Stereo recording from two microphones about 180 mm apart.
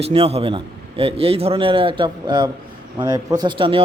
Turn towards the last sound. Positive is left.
turn(degrees=-30)  # may be behind; listen again after turning